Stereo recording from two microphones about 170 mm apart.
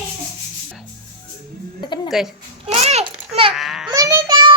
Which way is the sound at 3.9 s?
20° right (ahead or behind).